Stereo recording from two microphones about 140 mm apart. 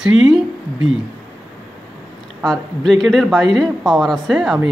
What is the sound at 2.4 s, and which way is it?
Speech, centre (ahead or behind).